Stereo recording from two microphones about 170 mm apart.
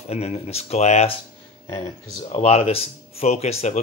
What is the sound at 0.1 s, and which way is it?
Speech, 40° left (ahead or behind).